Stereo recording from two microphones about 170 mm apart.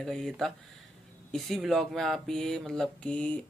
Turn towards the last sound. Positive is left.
turn(degrees=5)  # may be behind; listen again after turning